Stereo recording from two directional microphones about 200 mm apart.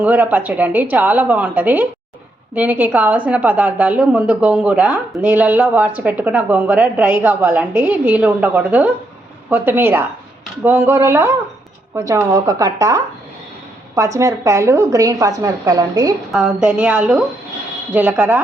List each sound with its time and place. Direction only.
0.0 s a woman's voice: 10° right (ahead or behind)
16.3 s a woman's voice: 5° right (ahead or behind)